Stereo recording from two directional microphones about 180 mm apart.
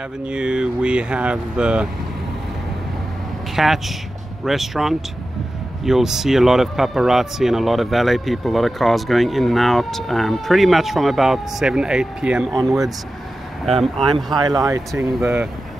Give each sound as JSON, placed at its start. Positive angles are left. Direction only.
{"t": 0.3, "sound": "speech", "side_deg": -5}
{"t": 3.5, "sound": "speech", "side_deg": 0}
{"t": 14.1, "sound": "speech", "side_deg": -25}